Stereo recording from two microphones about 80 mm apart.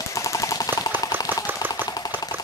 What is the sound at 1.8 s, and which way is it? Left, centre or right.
Engine, left.